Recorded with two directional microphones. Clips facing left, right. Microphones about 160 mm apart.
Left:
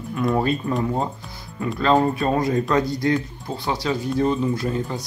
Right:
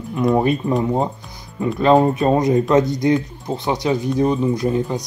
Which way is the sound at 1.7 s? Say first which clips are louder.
Right 5 dB; 20° right (ahead or behind).